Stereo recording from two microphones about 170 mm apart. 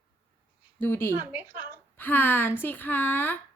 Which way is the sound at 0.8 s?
15° left (ahead or behind).